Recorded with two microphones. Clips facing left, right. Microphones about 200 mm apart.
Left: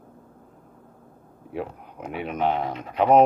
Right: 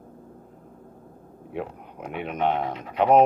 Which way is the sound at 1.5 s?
Centre (ahead or behind).